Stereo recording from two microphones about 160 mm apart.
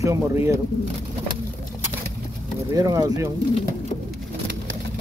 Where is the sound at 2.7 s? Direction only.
25° right (ahead or behind).